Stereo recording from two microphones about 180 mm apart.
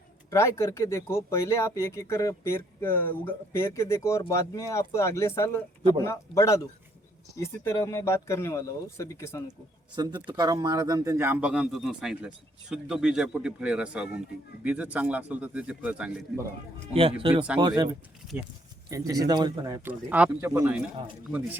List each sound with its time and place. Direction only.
0.3 s speech: 15° left (ahead or behind)
9.9 s a man's voice: 25° right (ahead or behind); by 16.2 s 5° right (ahead or behind)
16.9 s a man's voice: 30° right (ahead or behind)
18.9 s a man's voice: 20° right (ahead or behind)
19.9 s a man's voice: 5° right (ahead or behind)